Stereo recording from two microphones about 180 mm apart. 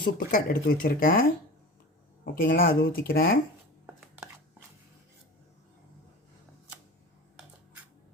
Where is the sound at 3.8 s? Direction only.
10° right (ahead or behind).